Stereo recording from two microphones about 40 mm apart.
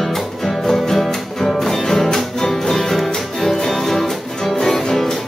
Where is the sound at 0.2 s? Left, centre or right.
Centre.